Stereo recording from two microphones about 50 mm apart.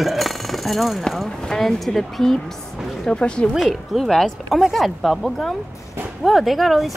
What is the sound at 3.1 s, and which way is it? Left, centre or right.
Speech, left.